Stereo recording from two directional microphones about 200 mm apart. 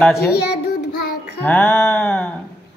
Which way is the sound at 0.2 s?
55° left (ahead or behind).